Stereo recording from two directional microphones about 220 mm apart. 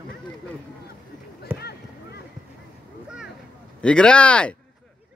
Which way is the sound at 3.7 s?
5° left (ahead or behind).